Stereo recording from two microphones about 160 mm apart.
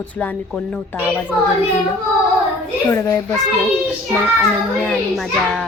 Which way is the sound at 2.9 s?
20° left (ahead or behind).